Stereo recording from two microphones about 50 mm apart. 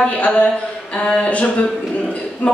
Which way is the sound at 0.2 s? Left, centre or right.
Left.